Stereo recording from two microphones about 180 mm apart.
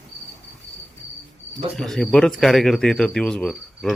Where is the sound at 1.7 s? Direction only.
Centre (ahead or behind).